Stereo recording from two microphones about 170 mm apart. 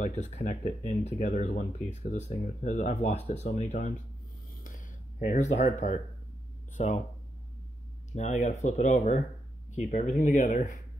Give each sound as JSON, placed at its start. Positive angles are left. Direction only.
{"t": 0.0, "sound": "speech", "side_deg": 40}
{"t": 4.6, "sound": "a sound", "side_deg": 50}
{"t": 6.8, "sound": "speech", "side_deg": 45}
{"t": 8.1, "sound": "speech", "side_deg": 45}